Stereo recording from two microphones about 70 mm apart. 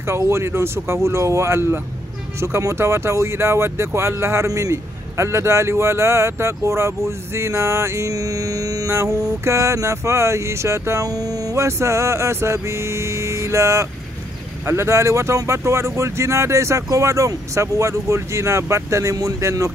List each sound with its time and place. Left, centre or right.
0.0 s a man's voice: right
9.4 s speech: right
11.1 s speech: right
11.5 s music: right
14.7 s speech: right